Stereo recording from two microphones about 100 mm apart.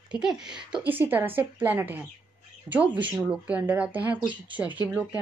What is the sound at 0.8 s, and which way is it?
A woman's voice, 20° right (ahead or behind).